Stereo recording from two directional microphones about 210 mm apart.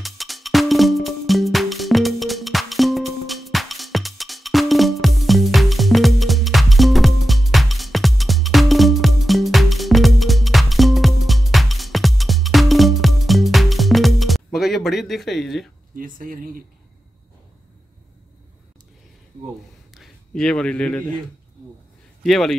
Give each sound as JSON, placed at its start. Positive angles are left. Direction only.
{"t": 0.0, "sound": "music", "side_deg": 0}
{"t": 16.0, "sound": "a sound", "side_deg": -40}
{"t": 19.9, "sound": "a man's voice", "side_deg": 0}
{"t": 22.2, "sound": "speech", "side_deg": 0}